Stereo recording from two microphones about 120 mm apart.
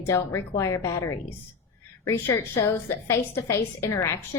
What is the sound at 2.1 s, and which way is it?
A woman's voice, 20° left (ahead or behind).